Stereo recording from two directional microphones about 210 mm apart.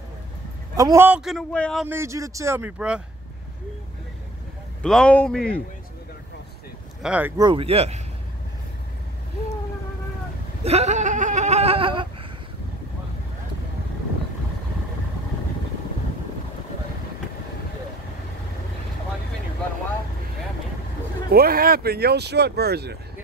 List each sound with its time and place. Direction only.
0.7 s a man's voice: 15° right (ahead or behind); by 1.9 s 5° left (ahead or behind)
1.9 s speech: 15° right (ahead or behind)
4.8 s a man's voice: 5° left (ahead or behind)
7.0 s speech: 5° right (ahead or behind)
7.3 s speech: 20° right (ahead or behind)
10.6 s laughter: 30° right (ahead or behind)
21.3 s speech: 45° right (ahead or behind)